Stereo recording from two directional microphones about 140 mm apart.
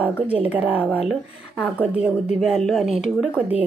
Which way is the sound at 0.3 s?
10° right (ahead or behind).